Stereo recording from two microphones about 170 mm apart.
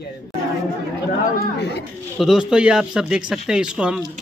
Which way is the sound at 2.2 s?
5° right (ahead or behind).